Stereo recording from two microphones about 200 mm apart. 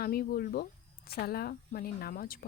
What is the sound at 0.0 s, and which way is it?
Speech, 50° left (ahead or behind).